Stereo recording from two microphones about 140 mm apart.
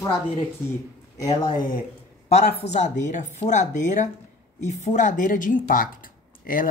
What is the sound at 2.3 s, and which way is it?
Speech, 50° left (ahead or behind).